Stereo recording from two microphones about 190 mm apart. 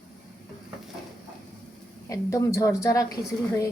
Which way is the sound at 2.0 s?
15° left (ahead or behind).